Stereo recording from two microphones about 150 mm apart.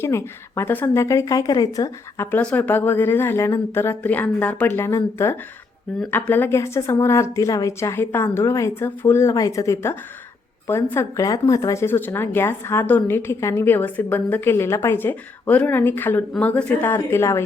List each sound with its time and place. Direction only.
0.0 s speech: 15° left (ahead or behind)